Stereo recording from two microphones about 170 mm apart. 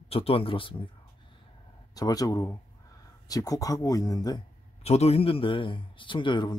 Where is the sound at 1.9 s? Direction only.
20° left (ahead or behind).